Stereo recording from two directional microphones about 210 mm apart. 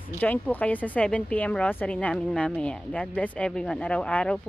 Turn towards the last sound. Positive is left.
turn(degrees=5)  # may be behind; listen again after turning